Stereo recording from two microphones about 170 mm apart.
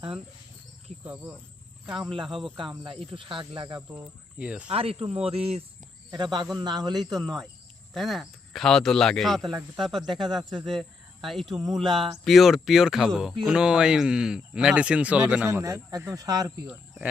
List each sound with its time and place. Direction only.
1.0 s insect: 10° right (ahead or behind)
2.6 s speech: 30° right (ahead or behind)
3.8 s speech: 15° right (ahead or behind)
4.7 s speech: 35° right (ahead or behind)
6.1 s speech: 25° right (ahead or behind)
7.9 s speech: centre (ahead or behind); by 16.5 s 20° right (ahead or behind)
16.6 s speech: 5° right (ahead or behind)